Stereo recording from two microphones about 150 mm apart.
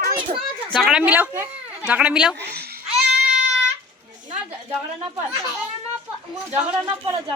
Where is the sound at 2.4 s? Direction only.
90° right.